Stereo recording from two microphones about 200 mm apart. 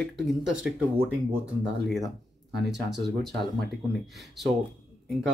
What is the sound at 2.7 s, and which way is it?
Speech, 60° right (ahead or behind).